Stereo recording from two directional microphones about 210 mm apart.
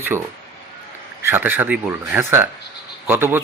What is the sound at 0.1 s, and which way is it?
Speech, 10° right (ahead or behind).